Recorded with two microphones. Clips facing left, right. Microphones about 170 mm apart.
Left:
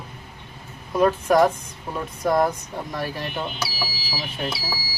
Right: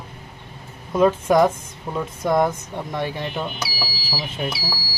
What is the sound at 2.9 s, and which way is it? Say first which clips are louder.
Speech: right 3 dB; 25° right (ahead or behind).